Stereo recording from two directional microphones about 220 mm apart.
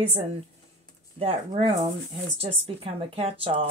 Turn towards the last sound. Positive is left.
turn(degrees=-25)  # may be behind; listen again after turning